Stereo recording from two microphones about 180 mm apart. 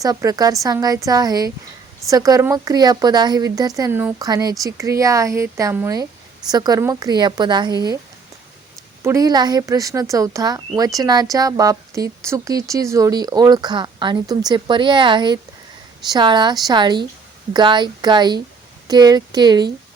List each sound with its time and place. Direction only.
0.0 s speech: 20° right (ahead or behind)
9.0 s speech: 20° right (ahead or behind)